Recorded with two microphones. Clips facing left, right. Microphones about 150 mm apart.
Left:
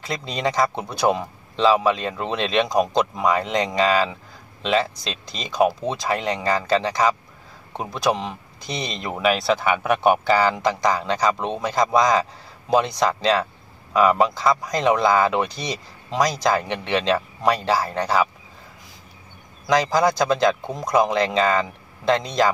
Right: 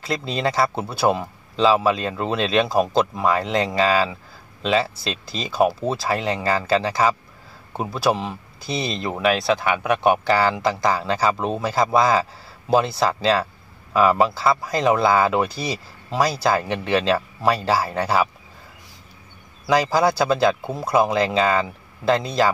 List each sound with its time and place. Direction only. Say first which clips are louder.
0.0 s speech: right 2 dB; centre (ahead or behind)
19.6 s speech: even; 10° right (ahead or behind)